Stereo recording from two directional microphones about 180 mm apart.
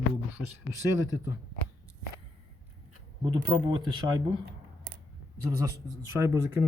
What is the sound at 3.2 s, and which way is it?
Speech, 25° right (ahead or behind).